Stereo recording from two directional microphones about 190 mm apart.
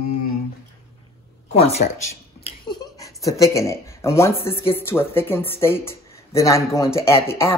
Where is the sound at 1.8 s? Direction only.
50° left (ahead or behind).